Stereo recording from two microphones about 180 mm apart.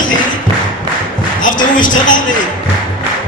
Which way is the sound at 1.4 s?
45° left (ahead or behind).